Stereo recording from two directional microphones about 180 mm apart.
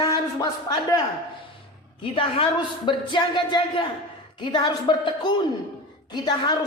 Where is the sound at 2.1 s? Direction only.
30° left (ahead or behind).